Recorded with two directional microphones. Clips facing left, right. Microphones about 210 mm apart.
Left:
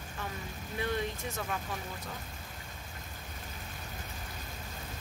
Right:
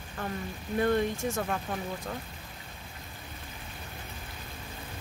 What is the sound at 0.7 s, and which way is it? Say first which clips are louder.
Speech: right 8 dB; 50° right (ahead or behind).